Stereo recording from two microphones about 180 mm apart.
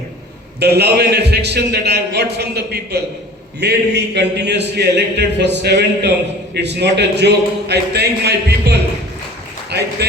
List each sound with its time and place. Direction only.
0.6 s a man's voice: 65° right (ahead or behind)